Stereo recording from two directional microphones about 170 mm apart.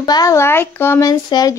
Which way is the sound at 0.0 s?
20° left (ahead or behind).